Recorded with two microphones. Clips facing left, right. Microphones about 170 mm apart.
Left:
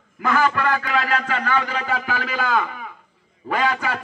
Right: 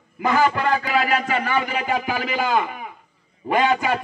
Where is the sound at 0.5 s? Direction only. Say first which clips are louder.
Right 1 dB; 20° right (ahead or behind).